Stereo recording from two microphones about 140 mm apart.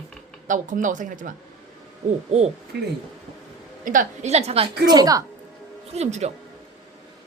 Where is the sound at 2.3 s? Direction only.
50° right (ahead or behind).